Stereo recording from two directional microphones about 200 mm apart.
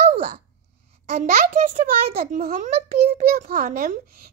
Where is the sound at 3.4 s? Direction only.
40° right (ahead or behind).